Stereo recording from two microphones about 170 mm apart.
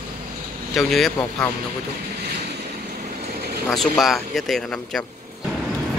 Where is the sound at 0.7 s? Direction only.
Centre (ahead or behind).